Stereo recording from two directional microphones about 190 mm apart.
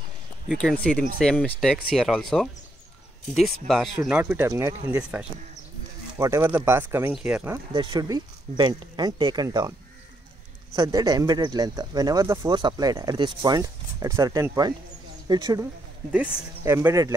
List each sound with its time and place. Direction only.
0.5 s speech: 5° left (ahead or behind)
7.7 s speech: 25° right (ahead or behind)
10.8 s speech: 20° right (ahead or behind)
16.6 s speech: 15° right (ahead or behind)